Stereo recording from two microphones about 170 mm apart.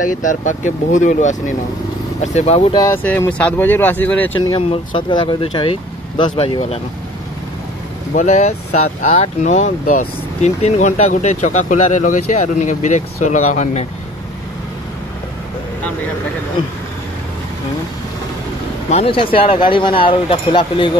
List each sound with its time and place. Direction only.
0.0 s speech: 50° left (ahead or behind)
2.8 s speech: 15° left (ahead or behind)
4.4 s speech: 30° left (ahead or behind)
8.1 s speech: 45° left (ahead or behind)
18.9 s speech: 35° left (ahead or behind)